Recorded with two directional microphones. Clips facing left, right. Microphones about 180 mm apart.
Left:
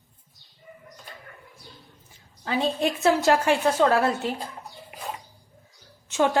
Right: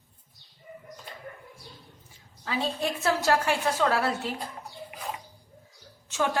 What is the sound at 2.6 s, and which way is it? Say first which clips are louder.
A woman's voice: left 5 dB; 20° left (ahead or behind).